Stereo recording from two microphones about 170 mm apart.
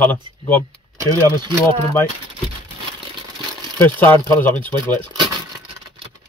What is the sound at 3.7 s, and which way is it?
Speech, 10° left (ahead or behind).